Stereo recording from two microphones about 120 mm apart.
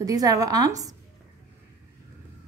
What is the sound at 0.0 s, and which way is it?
Speech, 30° right (ahead or behind).